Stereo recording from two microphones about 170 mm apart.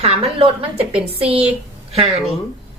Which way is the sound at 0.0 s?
35° right (ahead or behind).